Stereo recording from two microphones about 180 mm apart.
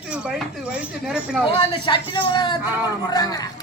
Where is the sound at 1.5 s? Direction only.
25° left (ahead or behind).